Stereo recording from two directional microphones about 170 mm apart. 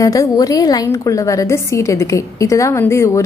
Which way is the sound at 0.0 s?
20° left (ahead or behind).